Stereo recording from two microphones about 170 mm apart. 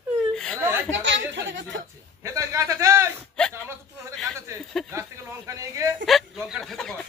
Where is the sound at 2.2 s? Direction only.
15° right (ahead or behind).